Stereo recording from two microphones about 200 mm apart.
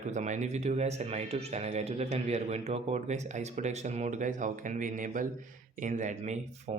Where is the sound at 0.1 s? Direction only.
35° right (ahead or behind).